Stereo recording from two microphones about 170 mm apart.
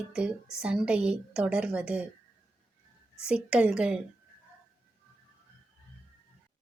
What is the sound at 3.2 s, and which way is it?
Speech, 5° right (ahead or behind).